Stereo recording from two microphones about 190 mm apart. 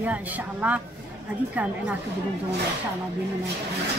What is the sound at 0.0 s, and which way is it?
Speech, 5° right (ahead or behind).